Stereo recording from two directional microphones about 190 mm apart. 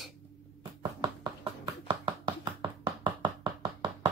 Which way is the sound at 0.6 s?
25° right (ahead or behind).